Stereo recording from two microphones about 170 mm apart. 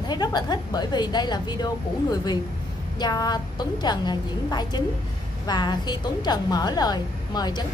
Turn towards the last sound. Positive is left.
turn(degrees=25)  # may be behind; listen again after turning